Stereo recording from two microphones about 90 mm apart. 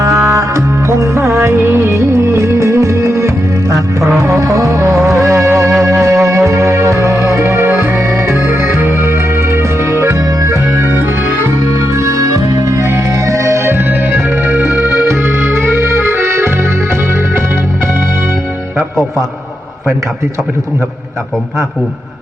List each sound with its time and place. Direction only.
0.0 s music: 35° right (ahead or behind)
11.9 s music: 35° right (ahead or behind); by 15.0 s 20° right (ahead or behind)
15.4 s accordion: 20° right (ahead or behind)